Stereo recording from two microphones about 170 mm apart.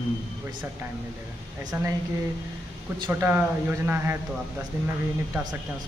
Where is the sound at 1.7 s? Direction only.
15° right (ahead or behind).